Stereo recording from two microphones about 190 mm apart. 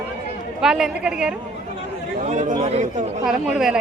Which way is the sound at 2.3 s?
40° right (ahead or behind).